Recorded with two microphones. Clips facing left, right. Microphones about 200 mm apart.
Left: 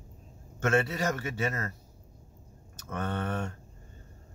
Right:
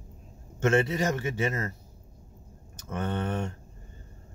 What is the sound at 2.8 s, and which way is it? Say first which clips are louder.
Speech: right 2 dB; 20° right (ahead or behind).